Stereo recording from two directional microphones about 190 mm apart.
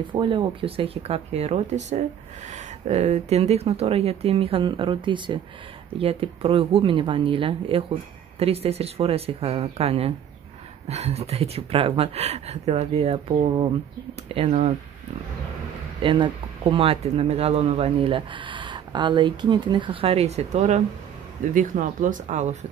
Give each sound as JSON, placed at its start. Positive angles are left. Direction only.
{"t": 0.1, "sound": "speech", "side_deg": -25}
{"t": 16.0, "sound": "speech", "side_deg": -25}